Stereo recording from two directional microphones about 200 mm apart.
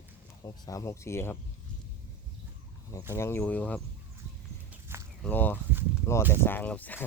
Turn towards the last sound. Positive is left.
turn(degrees=10)  # may be behind; listen again after turning